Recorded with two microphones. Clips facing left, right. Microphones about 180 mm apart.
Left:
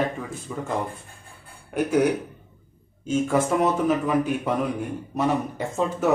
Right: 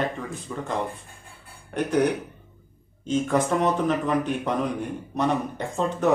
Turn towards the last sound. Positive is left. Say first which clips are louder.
# even
turn(degrees=5)  # may be behind; listen again after turning